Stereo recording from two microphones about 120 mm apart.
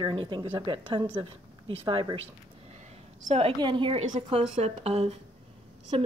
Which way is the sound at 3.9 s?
90° right.